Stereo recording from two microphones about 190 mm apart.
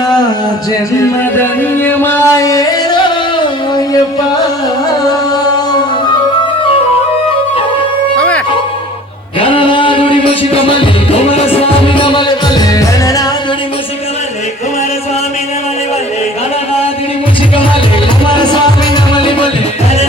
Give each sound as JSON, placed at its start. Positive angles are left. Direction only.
{"t": 1.8, "sound": "music", "side_deg": 10}
{"t": 8.1, "sound": "music", "side_deg": 5}
{"t": 9.4, "sound": "a sound", "side_deg": 30}
{"t": 11.1, "sound": "music", "side_deg": 30}